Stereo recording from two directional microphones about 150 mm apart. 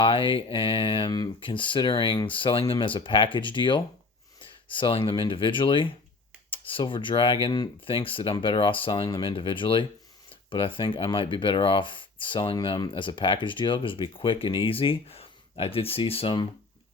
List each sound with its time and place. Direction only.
0.0 s speech: 35° left (ahead or behind)